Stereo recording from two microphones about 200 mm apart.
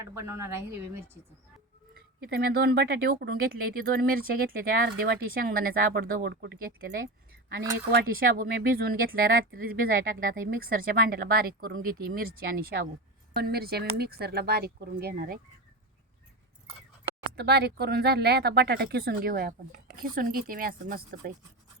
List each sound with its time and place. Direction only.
0.0 s a woman's voice: 15° right (ahead or behind)
2.3 s speech: 50° right (ahead or behind)
7.9 s speech: 45° right (ahead or behind)
12.7 s a woman's voice: 60° right (ahead or behind)
17.3 s speech: 55° right (ahead or behind)